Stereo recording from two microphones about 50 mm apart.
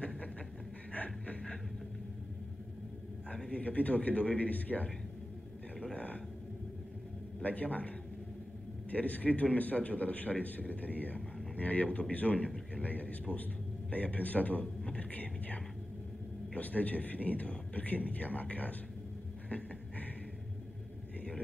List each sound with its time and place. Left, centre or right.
0.9 s a sound: left
3.5 s speech: left
5.9 s a sound: left
7.4 s speech: left
8.9 s a man's voice: left
14.6 s speech: centre